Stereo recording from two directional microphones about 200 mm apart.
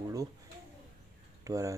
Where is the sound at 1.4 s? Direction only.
15° right (ahead or behind).